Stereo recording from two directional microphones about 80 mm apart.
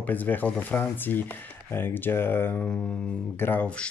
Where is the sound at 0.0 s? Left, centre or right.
Left.